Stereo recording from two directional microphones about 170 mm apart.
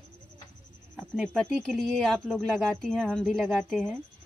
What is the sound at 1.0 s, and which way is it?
Speech, centre (ahead or behind).